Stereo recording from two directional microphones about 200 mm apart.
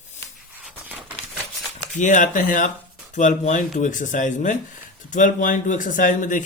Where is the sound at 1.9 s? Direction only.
40° left (ahead or behind).